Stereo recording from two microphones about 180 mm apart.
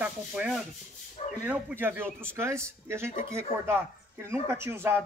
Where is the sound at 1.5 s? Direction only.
5° right (ahead or behind).